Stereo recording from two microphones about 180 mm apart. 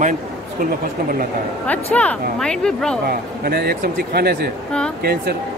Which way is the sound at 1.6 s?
10° left (ahead or behind).